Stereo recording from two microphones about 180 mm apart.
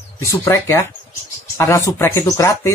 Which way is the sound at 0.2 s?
15° left (ahead or behind).